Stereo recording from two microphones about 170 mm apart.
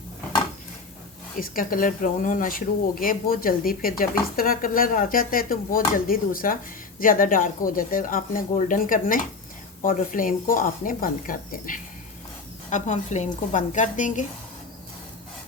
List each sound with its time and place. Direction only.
1.4 s speech: 55° left (ahead or behind)